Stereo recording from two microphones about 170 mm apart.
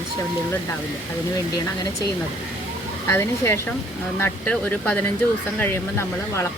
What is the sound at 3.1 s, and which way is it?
Speech, 15° left (ahead or behind).